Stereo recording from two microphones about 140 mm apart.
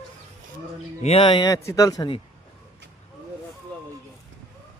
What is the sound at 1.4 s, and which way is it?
Speech, 20° left (ahead or behind).